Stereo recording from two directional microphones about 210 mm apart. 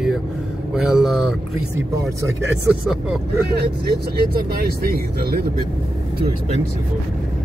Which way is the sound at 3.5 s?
50° right (ahead or behind).